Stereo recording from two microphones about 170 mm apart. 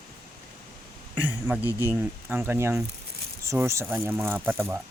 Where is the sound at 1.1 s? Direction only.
10° right (ahead or behind).